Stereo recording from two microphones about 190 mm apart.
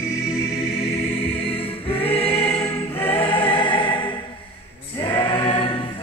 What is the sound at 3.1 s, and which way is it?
Music, 25° left (ahead or behind).